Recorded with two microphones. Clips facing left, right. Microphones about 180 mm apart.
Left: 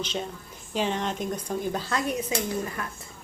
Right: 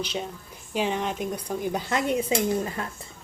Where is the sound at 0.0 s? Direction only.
10° right (ahead or behind).